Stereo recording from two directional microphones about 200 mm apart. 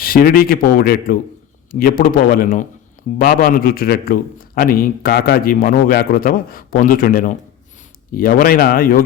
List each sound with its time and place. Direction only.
0.0 s a man's voice: 45° left (ahead or behind)